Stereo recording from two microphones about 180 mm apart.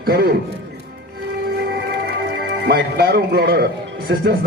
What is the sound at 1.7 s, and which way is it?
Music, 65° right (ahead or behind).